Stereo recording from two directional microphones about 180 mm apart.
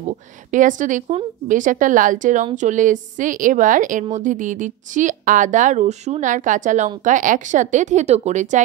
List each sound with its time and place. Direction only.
0.5 s a woman's voice: 45° right (ahead or behind)